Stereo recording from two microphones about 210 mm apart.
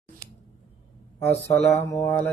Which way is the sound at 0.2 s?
45° right (ahead or behind).